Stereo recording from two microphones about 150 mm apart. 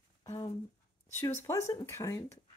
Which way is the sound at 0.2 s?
25° left (ahead or behind).